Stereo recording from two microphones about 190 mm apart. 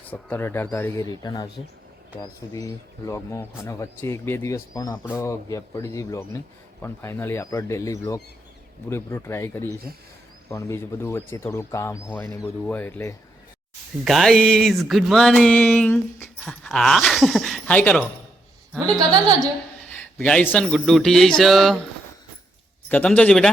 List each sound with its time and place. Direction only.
0.1 s speech: 10° left (ahead or behind)
2.5 s speech: 15° left (ahead or behind)
14.0 s speech: centre (ahead or behind)
18.9 s a woman's voice: 20° right (ahead or behind)
20.0 s speech: 5° left (ahead or behind)
22.9 s speech: 5° left (ahead or behind)